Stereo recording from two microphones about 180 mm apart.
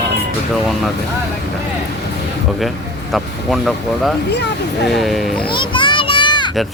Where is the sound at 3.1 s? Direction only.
Centre (ahead or behind).